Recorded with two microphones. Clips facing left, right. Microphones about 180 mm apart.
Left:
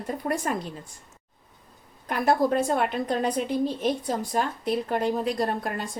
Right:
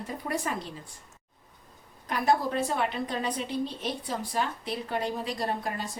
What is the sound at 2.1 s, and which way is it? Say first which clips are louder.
A woman's voice: left 4 dB; 55° left (ahead or behind).